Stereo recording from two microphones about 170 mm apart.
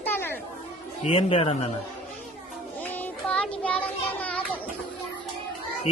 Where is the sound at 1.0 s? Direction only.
35° left (ahead or behind).